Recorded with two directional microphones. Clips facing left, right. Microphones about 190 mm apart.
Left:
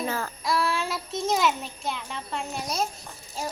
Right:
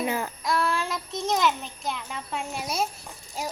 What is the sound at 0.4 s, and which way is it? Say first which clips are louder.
A child's voice: left 1 dB; centre (ahead or behind).